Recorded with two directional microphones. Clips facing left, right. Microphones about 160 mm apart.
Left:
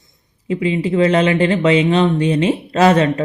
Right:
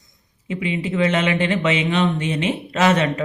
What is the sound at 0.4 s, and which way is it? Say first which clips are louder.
Speech: left 6 dB; 35° left (ahead or behind).